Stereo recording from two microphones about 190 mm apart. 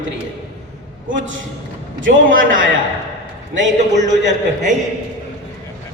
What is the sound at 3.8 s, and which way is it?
Speech, 40° right (ahead or behind).